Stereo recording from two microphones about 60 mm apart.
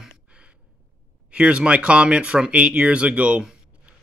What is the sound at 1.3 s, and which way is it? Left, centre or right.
Speech, centre.